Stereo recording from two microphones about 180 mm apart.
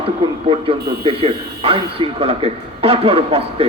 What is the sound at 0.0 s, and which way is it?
A man's voice, 30° right (ahead or behind).